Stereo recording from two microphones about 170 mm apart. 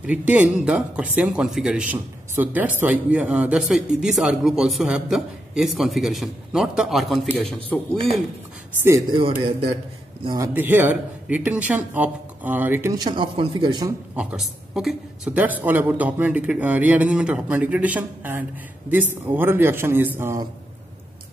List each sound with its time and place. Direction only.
0.0 s speech: 10° right (ahead or behind); by 8.0 s 10° left (ahead or behind)
9.1 s a man's voice: 30° right (ahead or behind)
10.2 s speech: 20° right (ahead or behind)
14.1 s speech: 5° right (ahead or behind)